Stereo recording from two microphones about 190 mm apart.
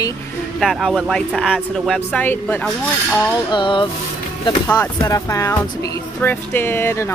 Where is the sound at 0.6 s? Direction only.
Centre (ahead or behind).